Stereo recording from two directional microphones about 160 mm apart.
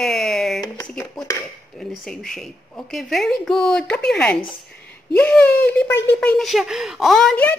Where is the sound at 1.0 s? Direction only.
20° left (ahead or behind).